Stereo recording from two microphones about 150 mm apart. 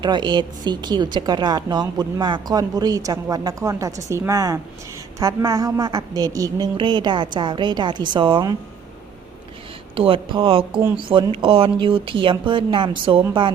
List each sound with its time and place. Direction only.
0.0 s a woman's voice: 30° right (ahead or behind)
9.9 s a woman's voice: 35° right (ahead or behind)